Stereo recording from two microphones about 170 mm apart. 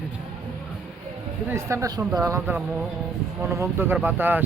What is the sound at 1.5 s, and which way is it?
Speech, 15° right (ahead or behind).